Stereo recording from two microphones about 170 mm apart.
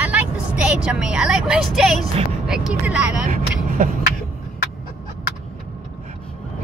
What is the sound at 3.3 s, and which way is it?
Vehicle, 50° right (ahead or behind).